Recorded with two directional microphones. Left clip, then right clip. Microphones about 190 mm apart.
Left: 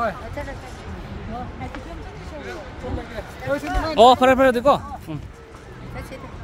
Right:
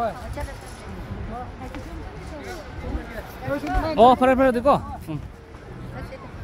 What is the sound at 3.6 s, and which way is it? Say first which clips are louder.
Speech: even; 50° left (ahead or behind).